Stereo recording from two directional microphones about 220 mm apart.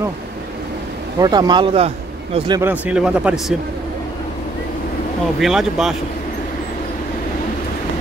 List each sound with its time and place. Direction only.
1.2 s speech: 20° right (ahead or behind)
2.6 s speech: 5° right (ahead or behind)
5.4 s speech: centre (ahead or behind)